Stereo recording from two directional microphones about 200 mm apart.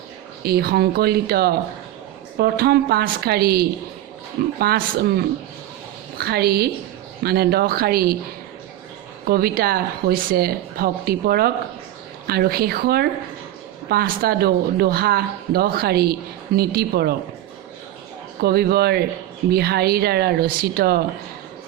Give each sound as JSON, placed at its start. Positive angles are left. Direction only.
{"t": 0.4, "sound": "speech", "side_deg": -50}
{"t": 6.1, "sound": "speech", "side_deg": -50}
{"t": 9.2, "sound": "speech", "side_deg": -50}
{"t": 18.3, "sound": "speech", "side_deg": -50}